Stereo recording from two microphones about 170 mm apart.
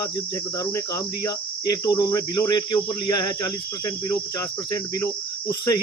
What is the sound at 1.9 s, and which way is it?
Cricket, 20° left (ahead or behind).